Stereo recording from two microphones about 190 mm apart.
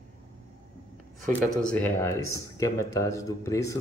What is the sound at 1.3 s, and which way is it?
Speech, 10° left (ahead or behind).